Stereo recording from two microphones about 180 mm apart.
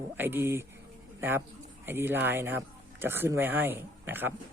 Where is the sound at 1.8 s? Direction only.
10° right (ahead or behind).